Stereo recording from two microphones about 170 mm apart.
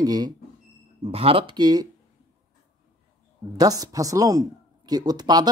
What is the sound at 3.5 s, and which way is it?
Speech, 20° right (ahead or behind).